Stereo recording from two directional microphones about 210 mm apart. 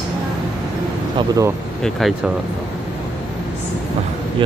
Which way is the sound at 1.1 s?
15° right (ahead or behind).